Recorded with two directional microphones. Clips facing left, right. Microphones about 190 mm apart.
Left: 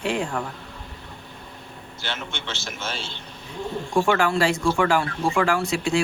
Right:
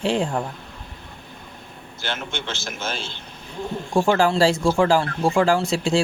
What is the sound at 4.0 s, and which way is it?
Speech, 25° right (ahead or behind).